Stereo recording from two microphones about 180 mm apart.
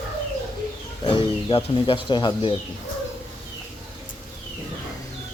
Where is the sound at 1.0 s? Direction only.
30° left (ahead or behind).